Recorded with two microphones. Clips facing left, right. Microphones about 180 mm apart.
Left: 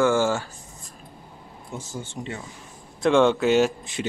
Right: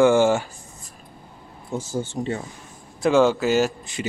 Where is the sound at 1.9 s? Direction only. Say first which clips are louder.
Right 8 dB; 40° right (ahead or behind).